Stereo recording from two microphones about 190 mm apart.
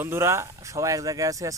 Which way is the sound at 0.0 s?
15° right (ahead or behind).